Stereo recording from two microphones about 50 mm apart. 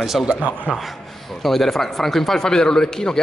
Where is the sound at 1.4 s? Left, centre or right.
Centre.